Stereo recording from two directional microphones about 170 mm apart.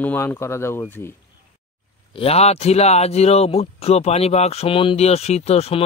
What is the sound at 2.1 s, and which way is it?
Speech, 35° left (ahead or behind).